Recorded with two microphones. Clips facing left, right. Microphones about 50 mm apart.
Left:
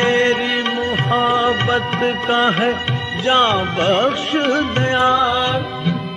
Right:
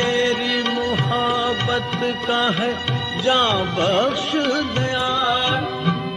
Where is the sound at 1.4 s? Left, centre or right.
Left.